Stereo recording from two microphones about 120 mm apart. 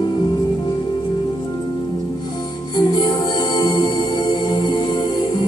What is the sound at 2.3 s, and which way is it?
Music, 35° left (ahead or behind).